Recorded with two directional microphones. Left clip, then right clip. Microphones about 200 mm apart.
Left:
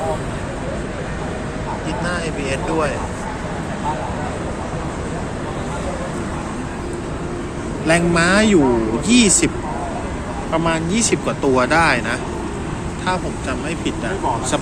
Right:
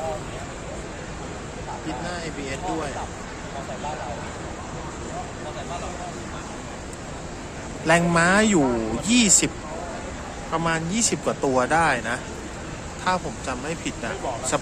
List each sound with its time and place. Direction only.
7.9 s speech: 30° right (ahead or behind)
10.5 s speech: 30° right (ahead or behind)
13.1 s speech: 35° right (ahead or behind)